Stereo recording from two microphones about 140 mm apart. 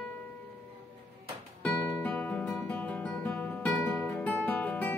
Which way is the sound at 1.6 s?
15° left (ahead or behind).